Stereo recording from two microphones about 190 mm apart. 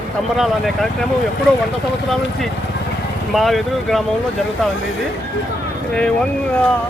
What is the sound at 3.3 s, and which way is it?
Speech, centre (ahead or behind).